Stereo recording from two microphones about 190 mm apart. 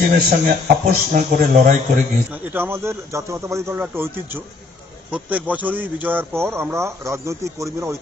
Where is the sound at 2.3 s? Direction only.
10° right (ahead or behind).